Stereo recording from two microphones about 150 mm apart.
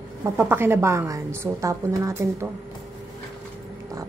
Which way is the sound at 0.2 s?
15° right (ahead or behind).